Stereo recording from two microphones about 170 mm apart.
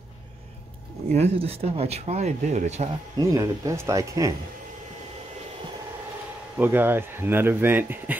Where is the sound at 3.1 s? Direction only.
20° right (ahead or behind).